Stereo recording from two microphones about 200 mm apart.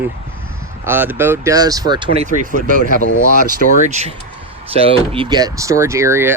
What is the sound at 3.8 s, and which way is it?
Speech, 35° right (ahead or behind).